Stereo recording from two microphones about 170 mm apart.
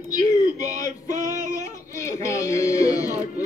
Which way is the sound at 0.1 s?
20° left (ahead or behind).